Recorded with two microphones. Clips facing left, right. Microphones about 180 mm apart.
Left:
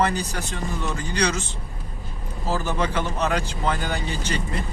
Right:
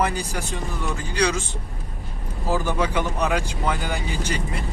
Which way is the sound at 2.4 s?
15° right (ahead or behind).